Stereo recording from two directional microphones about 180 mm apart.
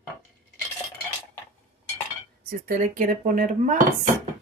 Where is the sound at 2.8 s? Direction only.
50° right (ahead or behind).